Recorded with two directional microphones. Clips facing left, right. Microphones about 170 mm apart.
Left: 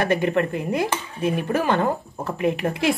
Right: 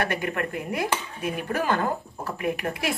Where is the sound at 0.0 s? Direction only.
25° left (ahead or behind).